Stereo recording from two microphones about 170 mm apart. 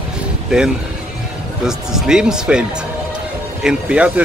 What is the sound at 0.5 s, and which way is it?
Speech, 5° right (ahead or behind).